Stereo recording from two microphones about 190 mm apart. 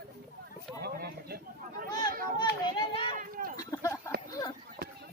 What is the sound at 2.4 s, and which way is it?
Children playing, 25° left (ahead or behind).